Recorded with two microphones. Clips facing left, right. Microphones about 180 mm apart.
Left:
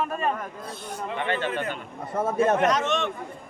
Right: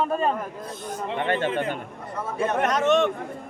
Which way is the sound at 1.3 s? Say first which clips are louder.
Right 3 dB; 25° right (ahead or behind).